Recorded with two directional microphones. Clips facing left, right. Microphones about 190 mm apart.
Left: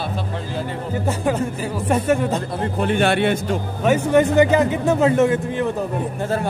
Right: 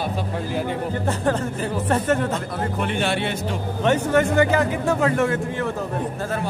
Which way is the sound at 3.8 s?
10° left (ahead or behind).